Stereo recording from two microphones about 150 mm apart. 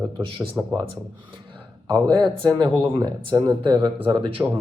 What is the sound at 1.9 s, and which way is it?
Speech, 30° right (ahead or behind).